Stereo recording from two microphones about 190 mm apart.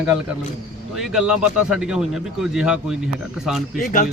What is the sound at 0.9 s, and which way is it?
Speech, 5° right (ahead or behind).